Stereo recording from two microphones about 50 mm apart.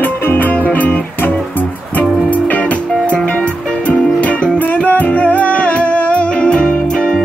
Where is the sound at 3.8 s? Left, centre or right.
Left.